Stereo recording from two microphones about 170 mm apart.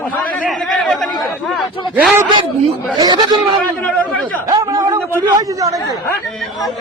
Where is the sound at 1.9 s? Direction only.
10° right (ahead or behind).